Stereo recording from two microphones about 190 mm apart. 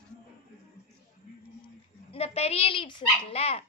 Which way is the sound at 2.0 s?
30° left (ahead or behind).